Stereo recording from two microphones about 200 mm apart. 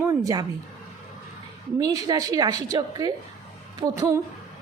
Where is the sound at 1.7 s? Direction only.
20° right (ahead or behind).